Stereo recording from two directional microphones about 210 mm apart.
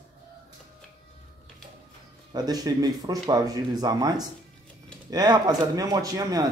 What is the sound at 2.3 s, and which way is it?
Speech, 20° right (ahead or behind).